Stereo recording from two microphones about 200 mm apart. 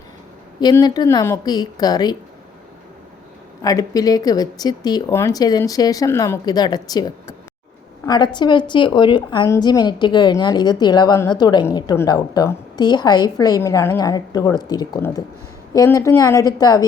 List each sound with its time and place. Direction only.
0.6 s a woman's voice: 20° left (ahead or behind)
3.6 s a woman's voice: 20° left (ahead or behind)